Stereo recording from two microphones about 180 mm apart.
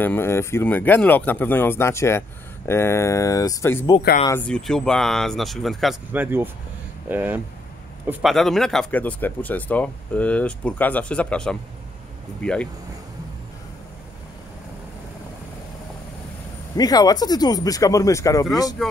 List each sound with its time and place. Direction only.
0.0 s speech: 10° left (ahead or behind)
6.1 s speech: 10° right (ahead or behind); by 12.6 s 5° left (ahead or behind)
16.7 s speech: 20° left (ahead or behind)
18.8 s speech: centre (ahead or behind)